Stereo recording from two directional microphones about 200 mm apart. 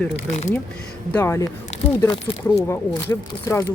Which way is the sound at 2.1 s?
25° left (ahead or behind).